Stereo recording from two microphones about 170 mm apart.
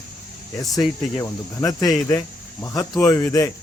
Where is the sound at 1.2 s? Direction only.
20° left (ahead or behind).